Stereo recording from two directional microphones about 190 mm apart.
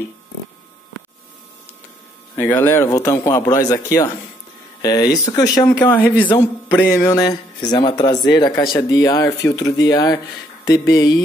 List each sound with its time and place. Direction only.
2.3 s speech: 10° left (ahead or behind)
6.3 s speech: 20° left (ahead or behind)